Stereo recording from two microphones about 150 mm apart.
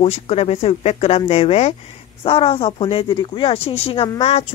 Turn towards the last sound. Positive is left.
turn(degrees=40)  # may be behind; listen again after turning